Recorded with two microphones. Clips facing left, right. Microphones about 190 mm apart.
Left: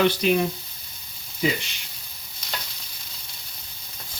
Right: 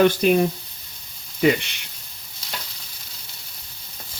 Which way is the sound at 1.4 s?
65° right (ahead or behind).